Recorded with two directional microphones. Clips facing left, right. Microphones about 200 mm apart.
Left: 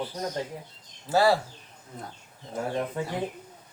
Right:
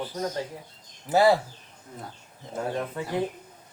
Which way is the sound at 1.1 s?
20° right (ahead or behind).